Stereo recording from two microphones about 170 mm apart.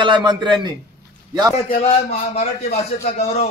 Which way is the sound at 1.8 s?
40° left (ahead or behind).